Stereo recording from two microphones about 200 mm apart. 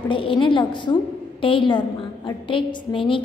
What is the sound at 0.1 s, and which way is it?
A woman's voice, 25° left (ahead or behind).